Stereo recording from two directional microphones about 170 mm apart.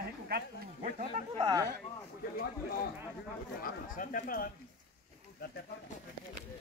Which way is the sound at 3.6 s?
55° left (ahead or behind).